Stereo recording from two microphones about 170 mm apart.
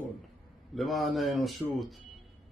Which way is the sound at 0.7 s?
Centre (ahead or behind).